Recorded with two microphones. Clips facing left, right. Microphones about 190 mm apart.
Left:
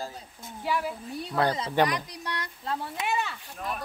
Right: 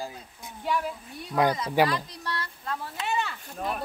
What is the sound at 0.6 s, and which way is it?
Speech, 5° left (ahead or behind).